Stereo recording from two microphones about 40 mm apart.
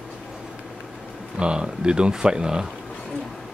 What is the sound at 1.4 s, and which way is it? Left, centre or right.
Speech, right.